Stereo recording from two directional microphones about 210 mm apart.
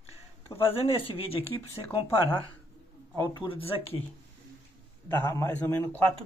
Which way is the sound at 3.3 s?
25° left (ahead or behind).